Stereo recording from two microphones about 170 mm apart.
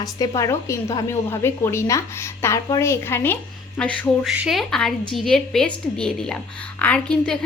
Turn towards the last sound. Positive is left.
turn(degrees=5)  # may be behind; listen again after turning